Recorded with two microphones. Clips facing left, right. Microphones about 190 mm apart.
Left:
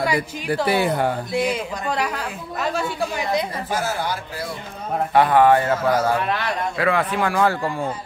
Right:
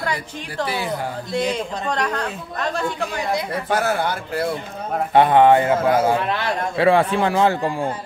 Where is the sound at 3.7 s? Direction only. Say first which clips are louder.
Right 5 dB; 60° right (ahead or behind).